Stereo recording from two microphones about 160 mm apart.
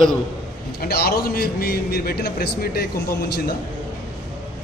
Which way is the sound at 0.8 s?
75° left (ahead or behind).